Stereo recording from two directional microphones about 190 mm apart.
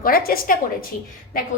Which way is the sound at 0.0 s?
50° left (ahead or behind).